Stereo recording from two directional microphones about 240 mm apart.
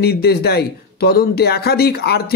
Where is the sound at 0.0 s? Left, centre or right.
Left.